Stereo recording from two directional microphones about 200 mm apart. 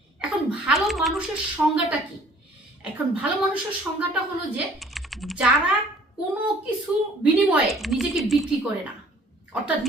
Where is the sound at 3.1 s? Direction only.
5° right (ahead or behind).